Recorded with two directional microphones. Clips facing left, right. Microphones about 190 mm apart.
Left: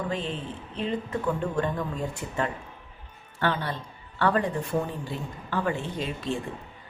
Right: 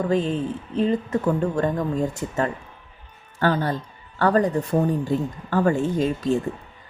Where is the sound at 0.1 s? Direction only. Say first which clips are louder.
Right 9 dB; 40° right (ahead or behind).